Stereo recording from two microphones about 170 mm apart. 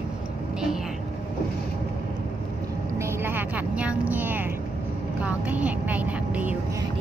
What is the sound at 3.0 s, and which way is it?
Speech, 15° right (ahead or behind).